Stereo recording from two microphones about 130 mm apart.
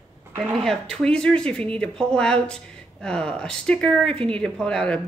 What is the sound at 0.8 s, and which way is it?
Speech, 5° left (ahead or behind).